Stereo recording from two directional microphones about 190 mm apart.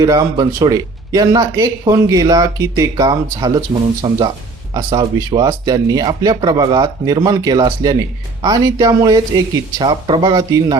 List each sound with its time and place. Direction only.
0.0 s speech: 20° right (ahead or behind)